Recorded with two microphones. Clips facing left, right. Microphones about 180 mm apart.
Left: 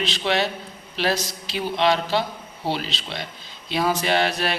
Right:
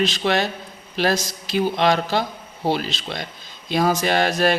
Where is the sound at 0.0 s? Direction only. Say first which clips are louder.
Right 3 dB; 45° right (ahead or behind).